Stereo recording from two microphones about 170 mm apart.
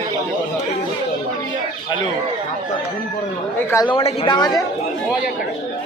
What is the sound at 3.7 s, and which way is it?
Speech, 15° left (ahead or behind).